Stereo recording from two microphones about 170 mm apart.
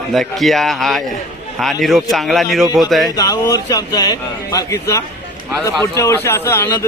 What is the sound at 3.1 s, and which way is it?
A man's voice, 20° left (ahead or behind).